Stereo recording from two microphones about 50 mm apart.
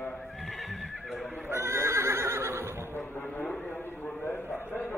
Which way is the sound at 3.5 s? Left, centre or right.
Centre.